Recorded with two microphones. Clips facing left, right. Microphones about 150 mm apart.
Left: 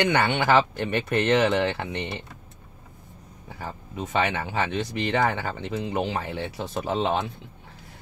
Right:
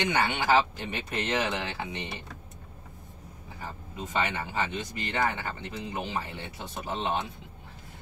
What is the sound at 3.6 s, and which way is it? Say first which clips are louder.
Speech: left 5 dB; 75° left (ahead or behind).